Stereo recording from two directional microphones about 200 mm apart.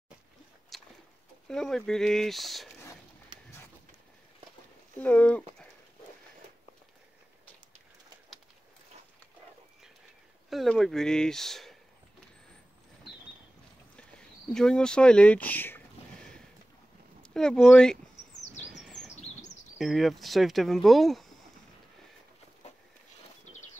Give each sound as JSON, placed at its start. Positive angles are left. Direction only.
{"t": 0.7, "sound": "a sound", "side_deg": 0}
{"t": 1.5, "sound": "speech", "side_deg": 0}
{"t": 3.3, "sound": "a sound", "side_deg": -20}
{"t": 5.0, "sound": "speech", "side_deg": 5}
{"t": 10.5, "sound": "speech", "side_deg": 0}
{"t": 13.9, "sound": "a sound", "side_deg": 5}
{"t": 17.2, "sound": "speech", "side_deg": 5}
{"t": 18.7, "sound": "bird", "side_deg": 5}
{"t": 19.8, "sound": "speech", "side_deg": 0}